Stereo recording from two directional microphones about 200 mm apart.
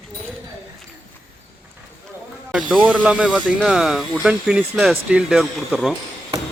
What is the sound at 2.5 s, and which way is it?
Speech, 5° right (ahead or behind).